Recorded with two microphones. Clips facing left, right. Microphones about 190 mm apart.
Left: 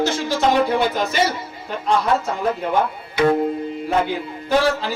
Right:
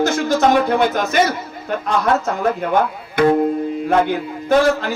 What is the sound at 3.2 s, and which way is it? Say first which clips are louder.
Speech: right 3 dB; 55° right (ahead or behind).